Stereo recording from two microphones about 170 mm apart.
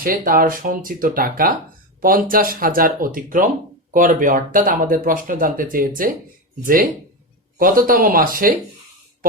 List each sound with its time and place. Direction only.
0.0 s speech: 60° right (ahead or behind)
7.6 s speech: 55° right (ahead or behind)